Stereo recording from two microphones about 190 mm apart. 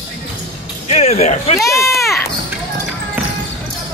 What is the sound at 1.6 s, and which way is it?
Speech, 15° left (ahead or behind).